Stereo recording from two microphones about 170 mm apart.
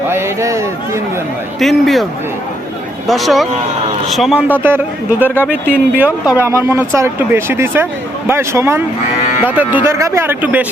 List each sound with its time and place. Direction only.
0.1 s a man's voice: 15° right (ahead or behind)
1.5 s speech: centre (ahead or behind)
3.1 s speech: centre (ahead or behind)